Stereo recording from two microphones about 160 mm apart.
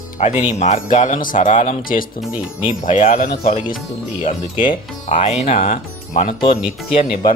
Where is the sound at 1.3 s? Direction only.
40° left (ahead or behind).